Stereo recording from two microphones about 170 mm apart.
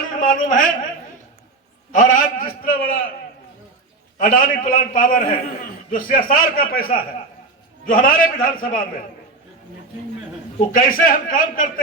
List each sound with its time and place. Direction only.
0.2 s a man's voice: 55° left (ahead or behind)
1.9 s a man's voice: 50° left (ahead or behind)
4.2 s a man's voice: 55° left (ahead or behind)
10.8 s a man's voice: 55° left (ahead or behind)